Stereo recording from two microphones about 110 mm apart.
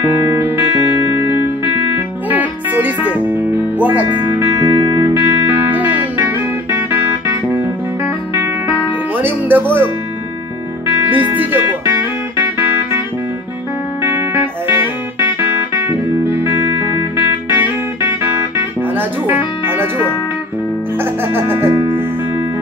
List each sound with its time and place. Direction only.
0.3 s music: 25° right (ahead or behind)
4.5 s music: 30° right (ahead or behind)
11.0 s music: 15° right (ahead or behind)
14.0 s music: 20° right (ahead or behind)